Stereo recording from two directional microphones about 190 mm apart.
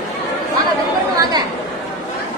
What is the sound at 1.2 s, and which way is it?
Chatter, 20° right (ahead or behind).